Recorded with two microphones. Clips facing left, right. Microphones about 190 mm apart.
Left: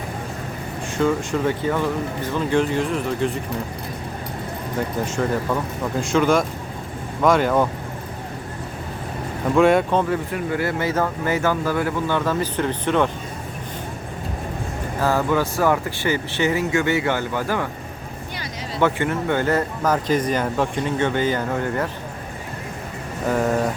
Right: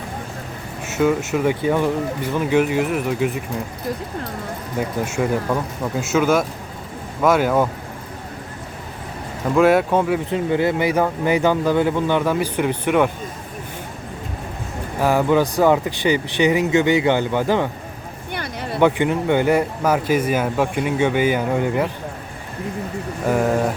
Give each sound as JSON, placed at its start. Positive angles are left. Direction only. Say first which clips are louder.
{"t": 0.9, "sound": "speech", "louder": "right 2 dB", "side_deg": -5}
{"t": 4.8, "sound": "speech", "louder": "right 2 dB", "side_deg": -10}
{"t": 9.6, "sound": "speech", "louder": "right 1 dB", "side_deg": -5}
{"t": 10.3, "sound": "speech", "louder": "right 4 dB", "side_deg": -20}
{"t": 15.0, "sound": "speech", "louder": "right 4 dB", "side_deg": -15}
{"t": 18.3, "sound": "a sound", "louder": "right 6 dB", "side_deg": -60}
{"t": 18.8, "sound": "speech", "louder": "right 4 dB", "side_deg": -15}